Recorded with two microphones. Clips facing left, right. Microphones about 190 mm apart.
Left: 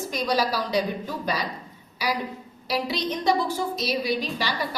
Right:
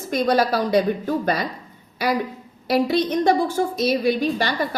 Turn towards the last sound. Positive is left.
turn(degrees=-55)  # may be behind; listen again after turning